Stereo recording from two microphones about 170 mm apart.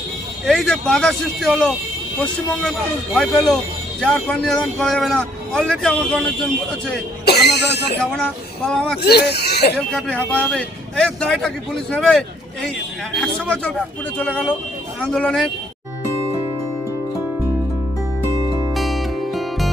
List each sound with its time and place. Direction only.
0.4 s a man's voice: centre (ahead or behind)
7.3 s speech: 75° left (ahead or behind)
8.1 s a man's voice: 5° left (ahead or behind)
9.0 s speech: 70° left (ahead or behind)
9.7 s a man's voice: 5° left (ahead or behind)
18.7 s music: centre (ahead or behind)